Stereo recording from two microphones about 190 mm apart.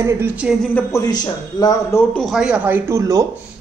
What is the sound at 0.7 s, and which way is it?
A man's voice, 20° left (ahead or behind).